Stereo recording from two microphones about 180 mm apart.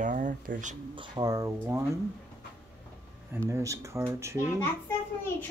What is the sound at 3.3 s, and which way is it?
Speech, 15° right (ahead or behind).